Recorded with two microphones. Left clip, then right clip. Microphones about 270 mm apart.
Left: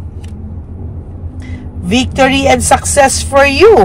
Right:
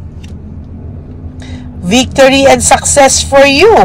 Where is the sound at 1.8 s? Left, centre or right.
Centre.